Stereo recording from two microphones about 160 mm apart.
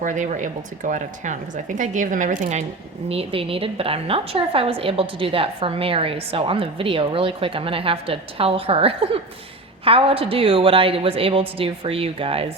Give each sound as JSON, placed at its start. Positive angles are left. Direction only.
{"t": 0.0, "sound": "speech", "side_deg": -50}
{"t": 3.1, "sound": "a woman's voice", "side_deg": -35}